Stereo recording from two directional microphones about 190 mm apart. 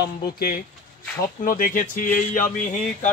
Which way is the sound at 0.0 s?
55° left (ahead or behind).